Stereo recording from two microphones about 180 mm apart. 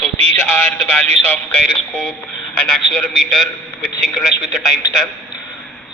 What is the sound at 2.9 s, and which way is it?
A man's voice, 5° left (ahead or behind).